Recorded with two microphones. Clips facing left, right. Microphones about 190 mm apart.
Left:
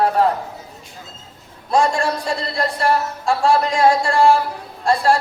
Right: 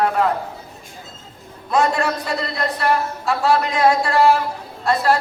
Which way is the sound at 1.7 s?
30° left (ahead or behind).